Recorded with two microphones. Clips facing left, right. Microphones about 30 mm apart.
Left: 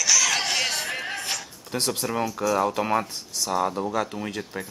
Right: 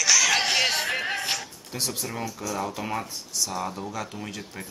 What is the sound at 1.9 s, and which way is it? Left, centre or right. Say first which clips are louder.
Speech: left 6 dB; left.